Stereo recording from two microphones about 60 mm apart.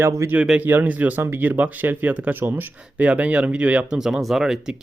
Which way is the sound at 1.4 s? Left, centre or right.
Right.